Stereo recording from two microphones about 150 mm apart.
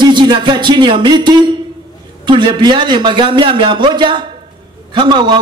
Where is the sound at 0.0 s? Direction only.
30° right (ahead or behind).